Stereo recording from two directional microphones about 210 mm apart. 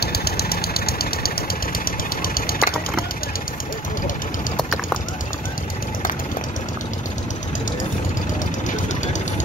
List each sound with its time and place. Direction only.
0.0 s engine knocking: 50° left (ahead or behind)
1.9 s engine: 45° left (ahead or behind)
4.6 s bird: centre (ahead or behind)